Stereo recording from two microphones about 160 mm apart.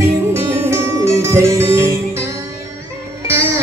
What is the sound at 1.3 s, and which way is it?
Music, 15° right (ahead or behind).